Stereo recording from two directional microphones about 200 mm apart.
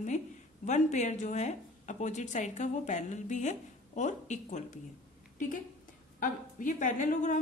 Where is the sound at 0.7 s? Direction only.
35° left (ahead or behind).